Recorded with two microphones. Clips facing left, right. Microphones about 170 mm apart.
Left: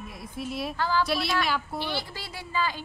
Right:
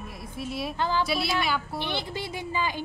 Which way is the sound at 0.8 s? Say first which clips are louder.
Even; 20° right (ahead or behind).